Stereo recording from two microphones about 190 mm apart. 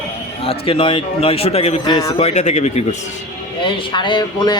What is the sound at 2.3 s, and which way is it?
Speech, 35° left (ahead or behind).